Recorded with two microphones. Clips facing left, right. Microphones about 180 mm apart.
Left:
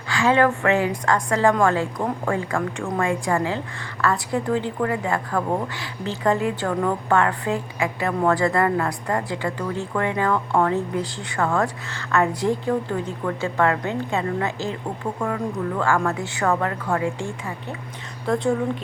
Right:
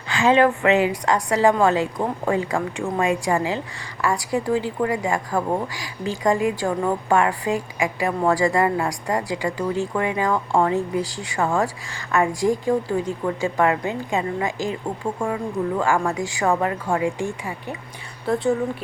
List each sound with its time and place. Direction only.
0.1 s a woman's voice: 20° right (ahead or behind)